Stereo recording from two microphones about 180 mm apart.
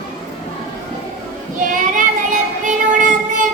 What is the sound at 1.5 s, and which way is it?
Child singing, 45° right (ahead or behind).